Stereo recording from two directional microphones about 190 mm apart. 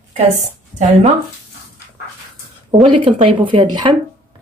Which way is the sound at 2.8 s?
25° right (ahead or behind).